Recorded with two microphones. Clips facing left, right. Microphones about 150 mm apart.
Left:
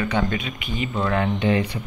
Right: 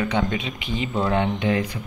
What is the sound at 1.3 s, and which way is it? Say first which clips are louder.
Speech: left 2 dB; centre (ahead or behind).